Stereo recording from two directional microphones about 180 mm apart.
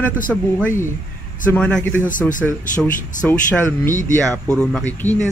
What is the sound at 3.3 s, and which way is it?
Speech, 10° left (ahead or behind).